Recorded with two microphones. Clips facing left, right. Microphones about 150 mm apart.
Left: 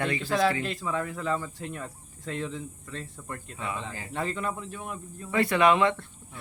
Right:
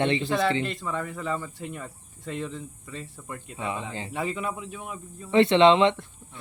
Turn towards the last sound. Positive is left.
turn(degrees=-20)  # may be behind; listen again after turning